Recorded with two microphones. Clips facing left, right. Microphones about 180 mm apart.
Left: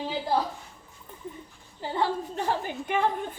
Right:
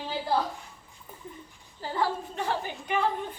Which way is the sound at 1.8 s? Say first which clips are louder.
Left 1 dB; 20° left (ahead or behind).